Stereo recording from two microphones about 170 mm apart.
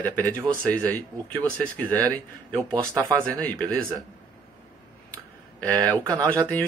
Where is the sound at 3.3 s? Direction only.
10° left (ahead or behind).